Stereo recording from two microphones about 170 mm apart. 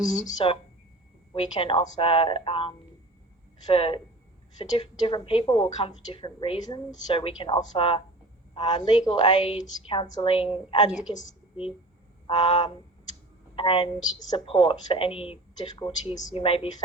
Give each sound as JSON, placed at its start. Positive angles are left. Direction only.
{"t": 0.3, "sound": "a woman's voice", "side_deg": 30}
{"t": 12.3, "sound": "a woman's voice", "side_deg": 25}